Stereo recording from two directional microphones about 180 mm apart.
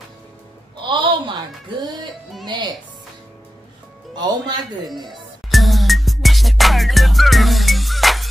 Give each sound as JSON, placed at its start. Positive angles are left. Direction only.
{"t": 0.8, "sound": "a sound", "side_deg": -25}
{"t": 2.4, "sound": "speech", "side_deg": -25}
{"t": 4.1, "sound": "music", "side_deg": -25}
{"t": 5.1, "sound": "music", "side_deg": 0}